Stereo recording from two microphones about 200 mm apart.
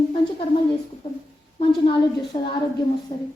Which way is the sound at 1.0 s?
25° left (ahead or behind).